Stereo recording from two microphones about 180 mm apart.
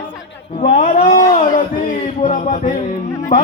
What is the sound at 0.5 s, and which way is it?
Speech, 40° left (ahead or behind).